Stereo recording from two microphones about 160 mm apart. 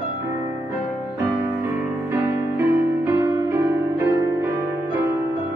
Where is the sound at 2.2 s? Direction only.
15° right (ahead or behind).